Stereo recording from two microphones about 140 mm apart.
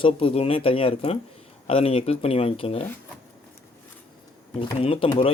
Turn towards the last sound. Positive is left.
turn(degrees=40)  # may be behind; listen again after turning